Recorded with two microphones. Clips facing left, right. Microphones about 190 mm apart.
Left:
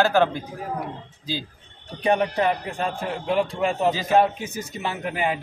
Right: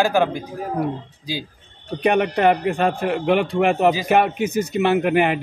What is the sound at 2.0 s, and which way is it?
A man's voice, 70° right (ahead or behind).